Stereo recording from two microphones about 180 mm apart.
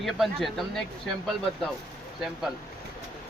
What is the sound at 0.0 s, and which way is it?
Speech, centre (ahead or behind).